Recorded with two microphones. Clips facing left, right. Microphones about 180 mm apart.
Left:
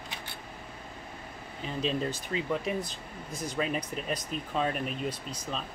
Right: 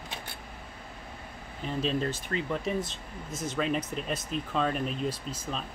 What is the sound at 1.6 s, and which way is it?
Speech, centre (ahead or behind).